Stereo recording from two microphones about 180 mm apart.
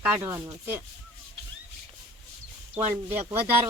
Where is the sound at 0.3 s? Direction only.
15° right (ahead or behind).